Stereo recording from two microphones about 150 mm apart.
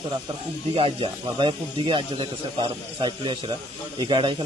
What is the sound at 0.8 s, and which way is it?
Speech, 35° right (ahead or behind).